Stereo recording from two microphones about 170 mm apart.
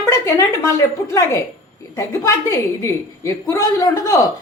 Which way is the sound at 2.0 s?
15° left (ahead or behind).